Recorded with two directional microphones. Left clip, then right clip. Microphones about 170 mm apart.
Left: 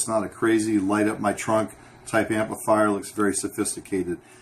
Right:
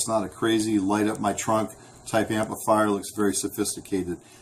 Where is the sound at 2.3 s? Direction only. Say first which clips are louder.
Left 1 dB; 5° right (ahead or behind).